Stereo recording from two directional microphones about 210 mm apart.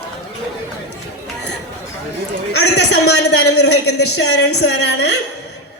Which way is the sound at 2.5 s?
55° left (ahead or behind).